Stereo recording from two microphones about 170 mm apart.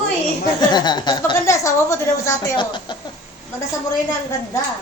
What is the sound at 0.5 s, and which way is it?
Speech, 25° left (ahead or behind).